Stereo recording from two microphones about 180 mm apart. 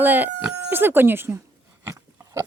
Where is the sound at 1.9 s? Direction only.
15° right (ahead or behind).